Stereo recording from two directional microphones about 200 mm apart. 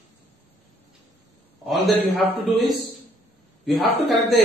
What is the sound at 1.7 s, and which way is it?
A man's voice, centre (ahead or behind).